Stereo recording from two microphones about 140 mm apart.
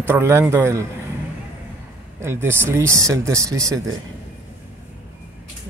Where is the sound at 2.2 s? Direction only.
15° right (ahead or behind).